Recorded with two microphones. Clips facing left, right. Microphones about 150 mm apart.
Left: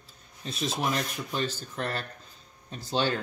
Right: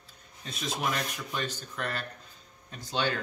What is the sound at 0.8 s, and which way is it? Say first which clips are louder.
A man's voice: left 1 dB; 30° left (ahead or behind).